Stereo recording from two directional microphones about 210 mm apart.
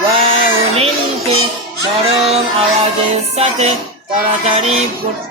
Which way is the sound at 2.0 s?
30° right (ahead or behind).